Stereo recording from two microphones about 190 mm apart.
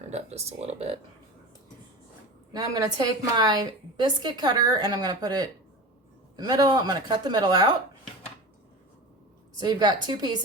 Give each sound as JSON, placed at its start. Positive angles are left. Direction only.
{"t": 0.1, "sound": "speech", "side_deg": -35}
{"t": 2.5, "sound": "a woman's voice", "side_deg": -20}
{"t": 9.6, "sound": "a woman's voice", "side_deg": -20}